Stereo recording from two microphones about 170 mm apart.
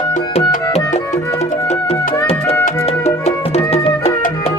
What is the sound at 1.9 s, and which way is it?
Music, 35° left (ahead or behind).